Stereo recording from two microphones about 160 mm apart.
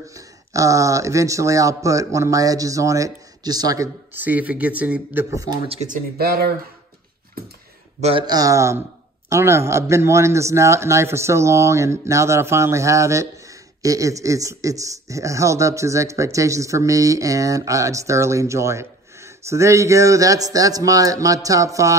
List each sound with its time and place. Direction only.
0.1 s speech: 20° right (ahead or behind)
5.7 s speech: 50° right (ahead or behind); by 6.5 s 75° right (ahead or behind)
8.0 s speech: 35° right (ahead or behind)